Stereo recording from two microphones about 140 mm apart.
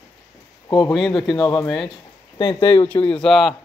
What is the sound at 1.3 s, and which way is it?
Speech, 30° left (ahead or behind).